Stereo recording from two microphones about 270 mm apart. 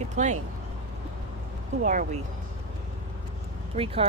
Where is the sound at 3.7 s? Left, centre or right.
Right.